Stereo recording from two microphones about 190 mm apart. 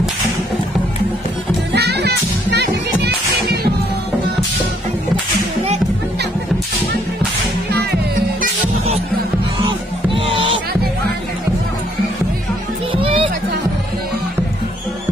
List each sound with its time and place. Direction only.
1.7 s music: 60° right (ahead or behind)
7.7 s music: 60° right (ahead or behind)
9.6 s music: 25° right (ahead or behind)
12.9 s music: 25° right (ahead or behind)